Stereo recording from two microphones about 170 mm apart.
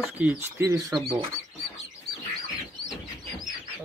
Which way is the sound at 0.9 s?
30° right (ahead or behind).